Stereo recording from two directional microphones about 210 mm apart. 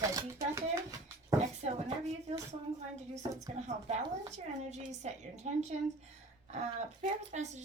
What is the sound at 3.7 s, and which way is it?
A child's voice, 30° right (ahead or behind).